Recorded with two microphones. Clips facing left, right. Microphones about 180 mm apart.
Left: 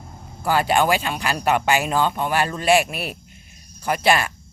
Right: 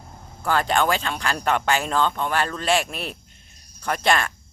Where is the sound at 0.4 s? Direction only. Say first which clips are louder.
Left 2 dB; 10° left (ahead or behind).